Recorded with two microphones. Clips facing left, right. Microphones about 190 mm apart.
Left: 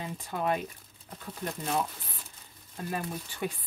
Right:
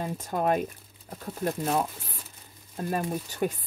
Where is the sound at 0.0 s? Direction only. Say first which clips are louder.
Right 5 dB; 45° right (ahead or behind).